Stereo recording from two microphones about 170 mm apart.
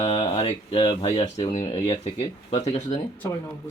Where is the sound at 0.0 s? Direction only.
35° left (ahead or behind).